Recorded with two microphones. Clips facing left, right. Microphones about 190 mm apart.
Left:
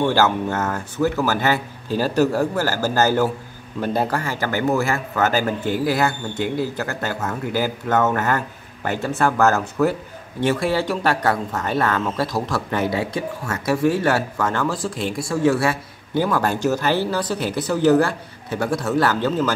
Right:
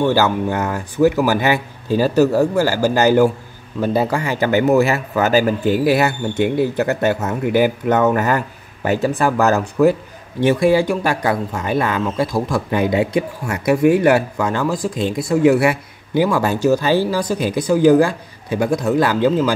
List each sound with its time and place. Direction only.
0.0 s speech: 10° right (ahead or behind)